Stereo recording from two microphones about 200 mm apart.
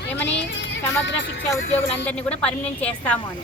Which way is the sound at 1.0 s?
65° left (ahead or behind).